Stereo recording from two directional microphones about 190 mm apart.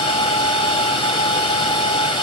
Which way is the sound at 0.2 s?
25° left (ahead or behind).